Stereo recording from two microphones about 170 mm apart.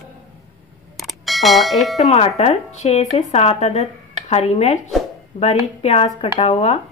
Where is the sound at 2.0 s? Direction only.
40° left (ahead or behind).